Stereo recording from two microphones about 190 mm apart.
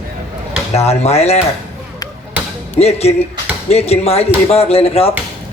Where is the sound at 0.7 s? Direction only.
35° left (ahead or behind).